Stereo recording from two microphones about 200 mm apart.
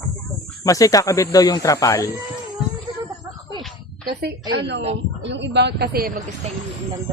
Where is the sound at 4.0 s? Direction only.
55° right (ahead or behind).